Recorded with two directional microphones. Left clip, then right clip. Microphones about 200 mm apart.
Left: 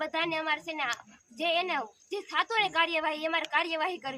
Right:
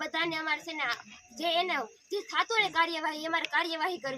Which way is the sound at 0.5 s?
20° left (ahead or behind).